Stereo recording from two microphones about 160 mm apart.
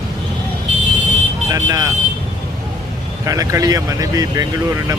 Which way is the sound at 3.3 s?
20° right (ahead or behind).